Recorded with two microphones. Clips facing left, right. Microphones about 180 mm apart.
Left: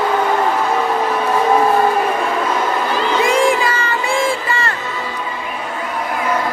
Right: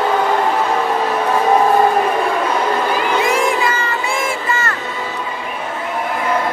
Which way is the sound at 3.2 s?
30° left (ahead or behind).